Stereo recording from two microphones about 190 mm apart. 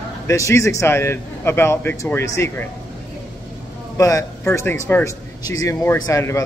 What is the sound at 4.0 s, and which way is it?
Speech, 15° left (ahead or behind).